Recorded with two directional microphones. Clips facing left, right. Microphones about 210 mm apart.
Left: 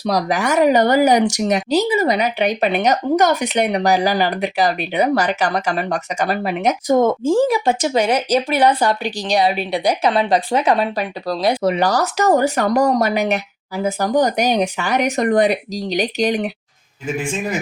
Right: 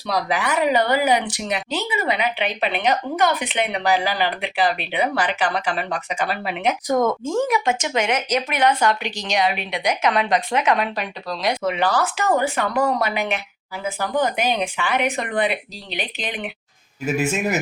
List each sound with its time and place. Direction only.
0.0 s speech: 40° left (ahead or behind)
6.8 s speech: 25° left (ahead or behind)
17.1 s speech: 5° right (ahead or behind)